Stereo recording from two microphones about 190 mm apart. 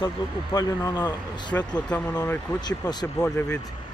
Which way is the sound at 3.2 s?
5° left (ahead or behind).